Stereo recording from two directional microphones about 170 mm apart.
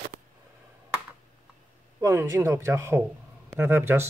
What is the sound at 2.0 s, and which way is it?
Speech, 15° right (ahead or behind).